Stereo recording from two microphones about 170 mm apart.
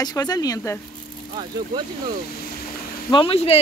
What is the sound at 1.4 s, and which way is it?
Speech, 25° right (ahead or behind).